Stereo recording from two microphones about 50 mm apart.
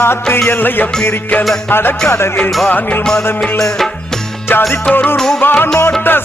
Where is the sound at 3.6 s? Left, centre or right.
Centre.